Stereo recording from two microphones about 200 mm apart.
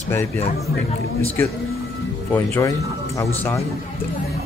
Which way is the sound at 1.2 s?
10° left (ahead or behind).